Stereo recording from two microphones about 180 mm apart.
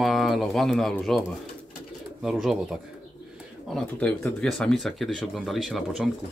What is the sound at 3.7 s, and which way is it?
Speech, 10° left (ahead or behind).